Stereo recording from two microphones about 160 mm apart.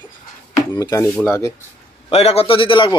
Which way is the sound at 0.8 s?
20° left (ahead or behind).